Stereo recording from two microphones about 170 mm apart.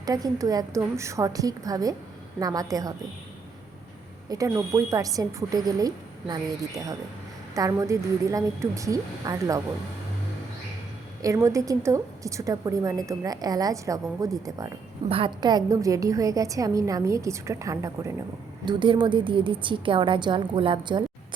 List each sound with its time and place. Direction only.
0.0 s a woman's voice: 20° right (ahead or behind)
4.3 s a woman's voice: 15° right (ahead or behind)
11.2 s a woman's voice: 20° right (ahead or behind)